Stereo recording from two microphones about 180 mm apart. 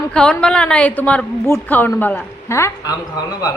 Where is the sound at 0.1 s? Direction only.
5° left (ahead or behind).